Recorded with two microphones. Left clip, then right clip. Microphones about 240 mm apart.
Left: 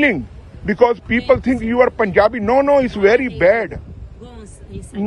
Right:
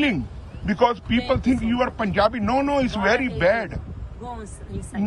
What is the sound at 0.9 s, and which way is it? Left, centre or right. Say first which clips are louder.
Speech: left 8 dB; centre.